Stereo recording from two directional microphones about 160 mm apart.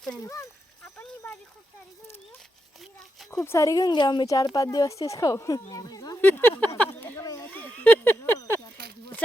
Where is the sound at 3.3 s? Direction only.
20° left (ahead or behind).